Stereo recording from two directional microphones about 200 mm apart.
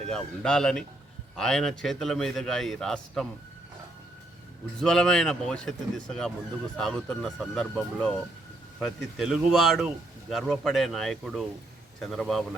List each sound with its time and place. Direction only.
0.1 s speech: 5° left (ahead or behind)
4.8 s speech: 5° left (ahead or behind)